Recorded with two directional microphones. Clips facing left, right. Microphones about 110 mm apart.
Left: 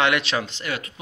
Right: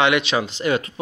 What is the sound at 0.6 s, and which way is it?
Speech, 25° right (ahead or behind).